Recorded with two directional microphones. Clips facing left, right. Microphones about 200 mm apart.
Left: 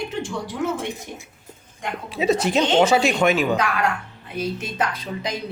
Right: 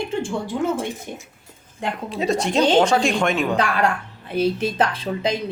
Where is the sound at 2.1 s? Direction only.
5° left (ahead or behind).